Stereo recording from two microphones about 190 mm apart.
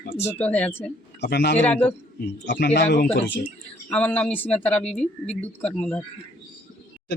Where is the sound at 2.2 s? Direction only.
65° left (ahead or behind).